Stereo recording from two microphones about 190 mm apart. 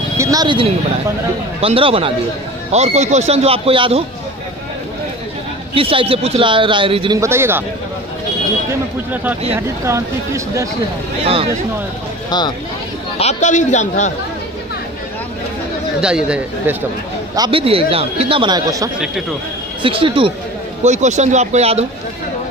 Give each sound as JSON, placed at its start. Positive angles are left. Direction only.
{"t": 0.2, "sound": "speech", "side_deg": -20}
{"t": 5.8, "sound": "speech", "side_deg": -30}
{"t": 7.2, "sound": "speech", "side_deg": -15}
{"t": 9.1, "sound": "speech", "side_deg": -10}
{"t": 12.3, "sound": "speech", "side_deg": 20}
{"t": 13.2, "sound": "a man's voice", "side_deg": 40}
{"t": 16.0, "sound": "speech", "side_deg": -5}
{"t": 17.4, "sound": "speech", "side_deg": -30}
{"t": 20.8, "sound": "speech", "side_deg": -40}